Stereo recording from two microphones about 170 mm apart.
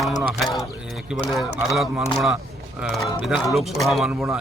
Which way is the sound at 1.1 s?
Centre (ahead or behind).